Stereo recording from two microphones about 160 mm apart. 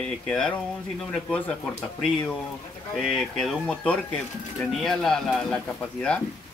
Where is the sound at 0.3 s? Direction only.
5° left (ahead or behind).